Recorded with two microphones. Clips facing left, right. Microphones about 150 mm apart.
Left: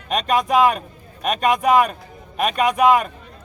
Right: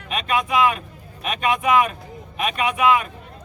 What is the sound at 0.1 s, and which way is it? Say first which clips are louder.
Speech: left 4 dB; 40° left (ahead or behind).